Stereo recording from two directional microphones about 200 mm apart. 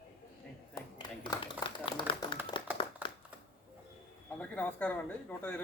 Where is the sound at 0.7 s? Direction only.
20° left (ahead or behind).